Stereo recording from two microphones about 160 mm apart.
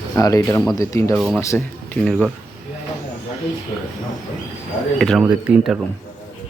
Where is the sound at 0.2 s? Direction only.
20° left (ahead or behind).